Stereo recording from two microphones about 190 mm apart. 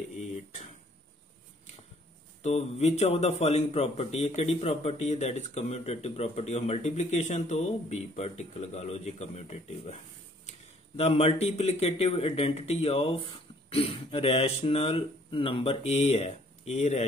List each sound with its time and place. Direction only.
2.4 s a man's voice: 35° left (ahead or behind)
11.0 s a man's voice: 35° left (ahead or behind)